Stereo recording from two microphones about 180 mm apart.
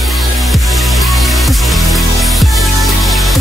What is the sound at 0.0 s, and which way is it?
Music, centre (ahead or behind).